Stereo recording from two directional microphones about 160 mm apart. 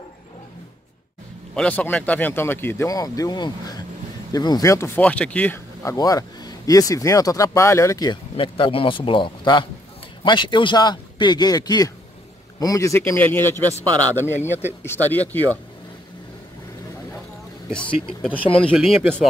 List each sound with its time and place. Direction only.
1.5 s speech: 5° left (ahead or behind)
17.6 s speech: 5° left (ahead or behind)